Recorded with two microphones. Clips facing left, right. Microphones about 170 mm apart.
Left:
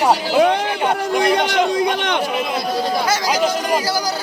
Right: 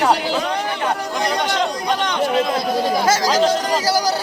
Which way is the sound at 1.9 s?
60° left (ahead or behind).